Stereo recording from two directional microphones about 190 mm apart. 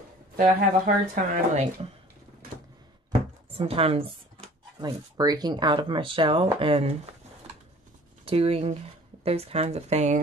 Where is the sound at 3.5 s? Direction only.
30° right (ahead or behind).